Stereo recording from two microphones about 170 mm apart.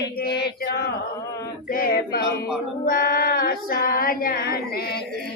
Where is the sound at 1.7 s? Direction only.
60° left (ahead or behind).